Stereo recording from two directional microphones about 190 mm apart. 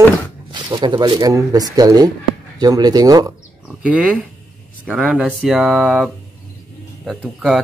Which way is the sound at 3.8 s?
5° right (ahead or behind).